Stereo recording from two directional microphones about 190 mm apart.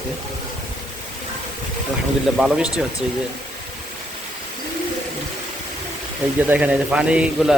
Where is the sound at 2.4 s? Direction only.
5° right (ahead or behind).